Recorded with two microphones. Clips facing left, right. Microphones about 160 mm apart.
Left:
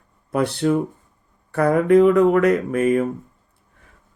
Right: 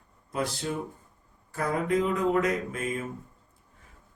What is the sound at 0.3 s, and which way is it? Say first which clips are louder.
Speech: left 11 dB; 65° left (ahead or behind).